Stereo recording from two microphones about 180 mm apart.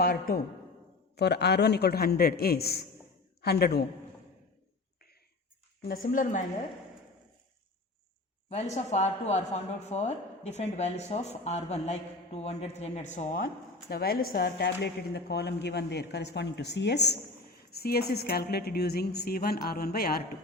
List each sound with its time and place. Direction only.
0.0 s a woman's voice: 55° left (ahead or behind)
1.1 s a woman's voice: 65° left (ahead or behind)
5.8 s a woman's voice: 50° left (ahead or behind)
8.4 s a woman's voice: 35° left (ahead or behind)
13.9 s a woman's voice: 55° left (ahead or behind)